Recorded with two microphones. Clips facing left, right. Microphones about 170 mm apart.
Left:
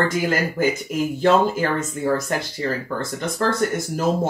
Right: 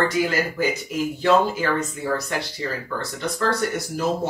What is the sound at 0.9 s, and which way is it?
Speech, 50° left (ahead or behind).